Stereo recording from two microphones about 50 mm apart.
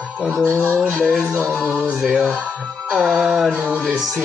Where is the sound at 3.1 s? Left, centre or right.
Centre.